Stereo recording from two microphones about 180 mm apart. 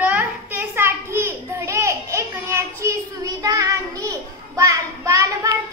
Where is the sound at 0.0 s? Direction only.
10° right (ahead or behind).